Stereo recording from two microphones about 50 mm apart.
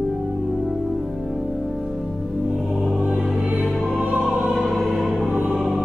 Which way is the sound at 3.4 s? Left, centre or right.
Right.